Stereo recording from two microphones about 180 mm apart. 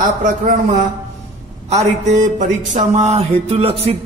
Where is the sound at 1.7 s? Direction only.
40° right (ahead or behind).